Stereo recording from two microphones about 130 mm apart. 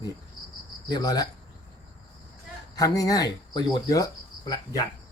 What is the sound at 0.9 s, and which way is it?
Speech, 30° left (ahead or behind).